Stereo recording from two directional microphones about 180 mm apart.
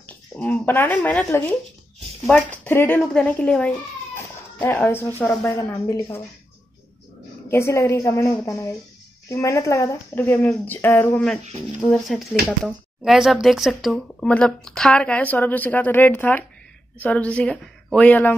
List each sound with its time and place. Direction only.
0.4 s a woman's voice: 10° left (ahead or behind)
7.4 s a woman's voice: 15° left (ahead or behind)